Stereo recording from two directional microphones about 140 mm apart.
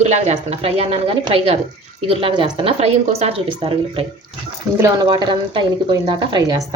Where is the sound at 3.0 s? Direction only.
50° right (ahead or behind).